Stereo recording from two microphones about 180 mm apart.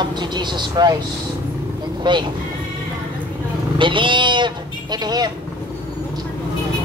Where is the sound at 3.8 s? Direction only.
25° right (ahead or behind).